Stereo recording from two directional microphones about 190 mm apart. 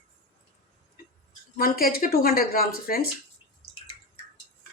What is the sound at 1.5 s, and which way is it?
A woman's voice, 50° left (ahead or behind).